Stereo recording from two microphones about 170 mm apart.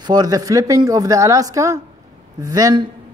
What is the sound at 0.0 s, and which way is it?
Speech, 25° right (ahead or behind).